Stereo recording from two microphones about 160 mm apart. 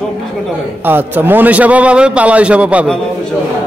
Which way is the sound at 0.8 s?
10° right (ahead or behind).